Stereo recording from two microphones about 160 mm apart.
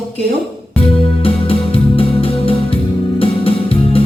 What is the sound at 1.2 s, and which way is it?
Music, 35° left (ahead or behind).